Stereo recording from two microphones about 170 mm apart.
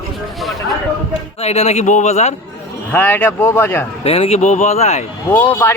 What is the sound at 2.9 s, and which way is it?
Speech, 10° left (ahead or behind).